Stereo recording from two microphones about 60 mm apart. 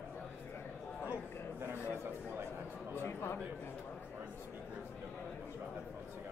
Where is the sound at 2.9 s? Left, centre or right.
Left.